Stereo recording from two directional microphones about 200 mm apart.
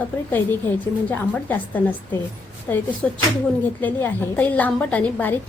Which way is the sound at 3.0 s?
5° left (ahead or behind).